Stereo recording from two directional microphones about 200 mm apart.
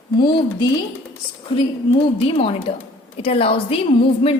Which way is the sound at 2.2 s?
25° left (ahead or behind).